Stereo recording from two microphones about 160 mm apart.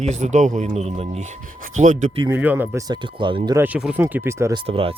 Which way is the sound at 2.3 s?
10° right (ahead or behind).